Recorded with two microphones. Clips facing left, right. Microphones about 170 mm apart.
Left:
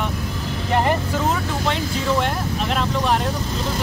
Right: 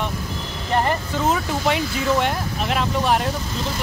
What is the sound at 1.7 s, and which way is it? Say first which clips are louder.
Speech: right 2 dB; 5° right (ahead or behind).